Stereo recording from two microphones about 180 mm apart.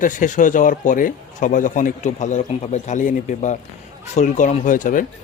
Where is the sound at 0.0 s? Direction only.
45° left (ahead or behind).